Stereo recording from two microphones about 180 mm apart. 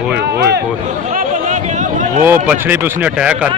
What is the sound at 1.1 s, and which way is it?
Chatter, 45° right (ahead or behind).